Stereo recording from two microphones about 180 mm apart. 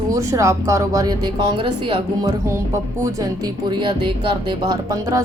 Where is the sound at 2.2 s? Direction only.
15° right (ahead or behind).